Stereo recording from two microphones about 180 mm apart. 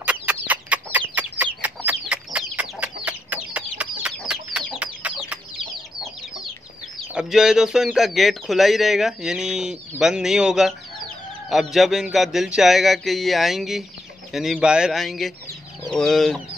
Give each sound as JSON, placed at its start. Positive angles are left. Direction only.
{"t": 0.0, "sound": "chicken", "side_deg": -5}
{"t": 7.2, "sound": "speech", "side_deg": -5}
{"t": 11.7, "sound": "speech", "side_deg": 0}
{"t": 15.8, "sound": "chicken", "side_deg": 5}